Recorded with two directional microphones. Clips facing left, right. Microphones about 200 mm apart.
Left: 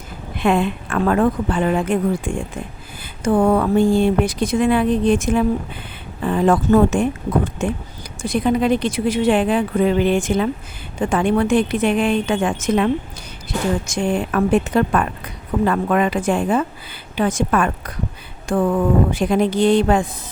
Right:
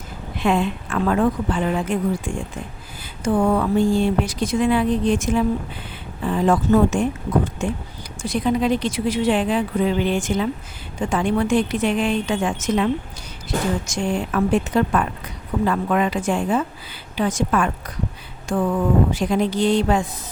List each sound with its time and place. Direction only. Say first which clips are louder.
0.3 s speech: left 2 dB; 60° left (ahead or behind)
8.2 s speech: left 2 dB; 55° left (ahead or behind)